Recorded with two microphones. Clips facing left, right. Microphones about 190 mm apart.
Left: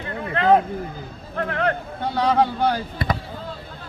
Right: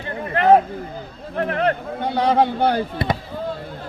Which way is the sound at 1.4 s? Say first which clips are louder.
Right 3 dB; 30° right (ahead or behind).